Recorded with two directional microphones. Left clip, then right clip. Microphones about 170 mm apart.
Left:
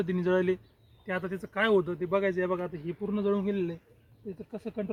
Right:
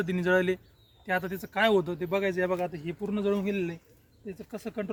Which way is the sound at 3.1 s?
35° right (ahead or behind).